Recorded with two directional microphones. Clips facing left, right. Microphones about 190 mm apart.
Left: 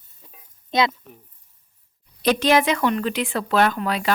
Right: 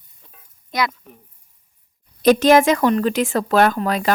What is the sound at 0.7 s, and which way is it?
Speech, 25° left (ahead or behind).